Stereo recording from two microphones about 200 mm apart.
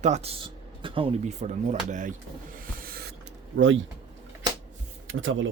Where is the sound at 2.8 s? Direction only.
50° right (ahead or behind).